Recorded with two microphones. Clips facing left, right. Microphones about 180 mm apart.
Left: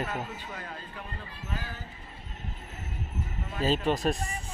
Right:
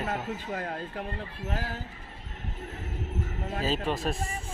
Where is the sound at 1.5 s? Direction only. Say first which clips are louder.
Right 4 dB; 75° right (ahead or behind).